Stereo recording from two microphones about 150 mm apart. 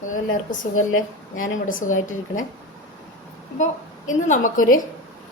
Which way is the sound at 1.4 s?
65° left (ahead or behind).